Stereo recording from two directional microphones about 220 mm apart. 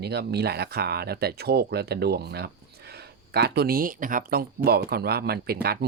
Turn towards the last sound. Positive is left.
turn(degrees=-45)  # may be behind; listen again after turning